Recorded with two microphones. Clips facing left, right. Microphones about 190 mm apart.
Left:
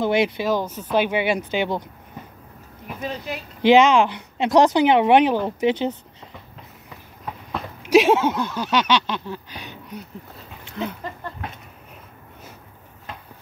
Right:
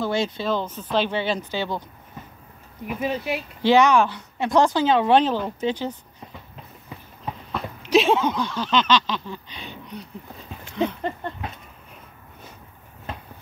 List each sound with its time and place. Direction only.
0.0 s speech: 15° left (ahead or behind)
2.9 s speech: 10° right (ahead or behind)
3.6 s speech: 15° left (ahead or behind)
7.8 s a sound: 10° left (ahead or behind)
10.8 s speech: centre (ahead or behind)